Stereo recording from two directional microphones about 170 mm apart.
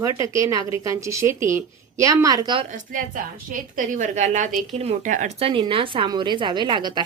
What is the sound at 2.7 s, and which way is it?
Speech, 50° right (ahead or behind).